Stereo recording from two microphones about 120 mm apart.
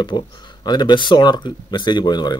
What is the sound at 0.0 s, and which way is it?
Speech, 40° left (ahead or behind).